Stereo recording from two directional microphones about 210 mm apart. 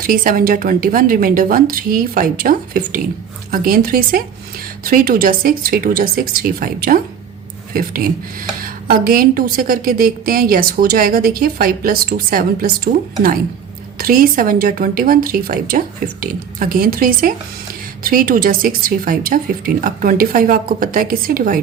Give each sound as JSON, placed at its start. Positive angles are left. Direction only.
{"t": 0.0, "sound": "speech", "side_deg": -40}